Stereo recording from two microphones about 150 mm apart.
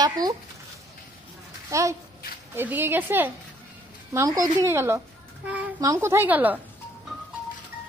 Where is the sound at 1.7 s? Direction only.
20° right (ahead or behind).